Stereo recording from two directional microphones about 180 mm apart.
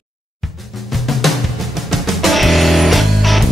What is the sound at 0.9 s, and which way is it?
Music, centre (ahead or behind).